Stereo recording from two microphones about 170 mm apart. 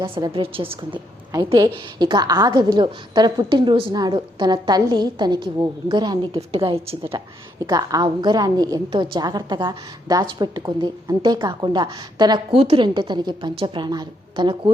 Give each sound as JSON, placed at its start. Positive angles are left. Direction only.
{"t": 0.0, "sound": "a woman's voice", "side_deg": -30}
{"t": 7.7, "sound": "a woman's voice", "side_deg": -20}